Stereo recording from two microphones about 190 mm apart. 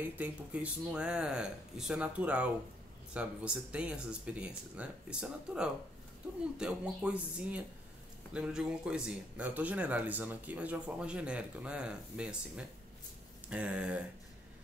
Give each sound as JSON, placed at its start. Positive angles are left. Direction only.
{"t": 0.2, "sound": "speech", "side_deg": -5}